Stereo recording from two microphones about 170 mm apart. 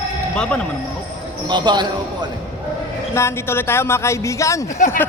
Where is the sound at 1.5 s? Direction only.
25° right (ahead or behind).